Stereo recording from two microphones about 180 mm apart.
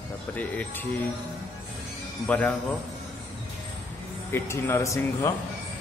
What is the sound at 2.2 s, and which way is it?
Speech, 10° left (ahead or behind).